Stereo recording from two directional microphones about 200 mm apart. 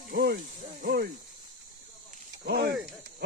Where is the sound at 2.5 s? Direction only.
55° right (ahead or behind).